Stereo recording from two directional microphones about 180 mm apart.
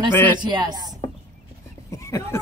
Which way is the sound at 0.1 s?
10° left (ahead or behind).